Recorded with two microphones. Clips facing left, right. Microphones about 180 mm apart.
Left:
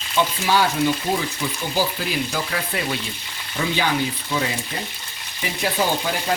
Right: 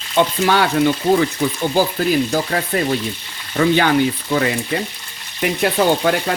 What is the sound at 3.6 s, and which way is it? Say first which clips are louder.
Frying: right 10 dB; 60° right (ahead or behind).